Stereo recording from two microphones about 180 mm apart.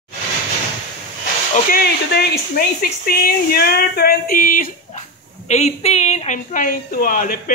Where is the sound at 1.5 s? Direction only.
55° left (ahead or behind).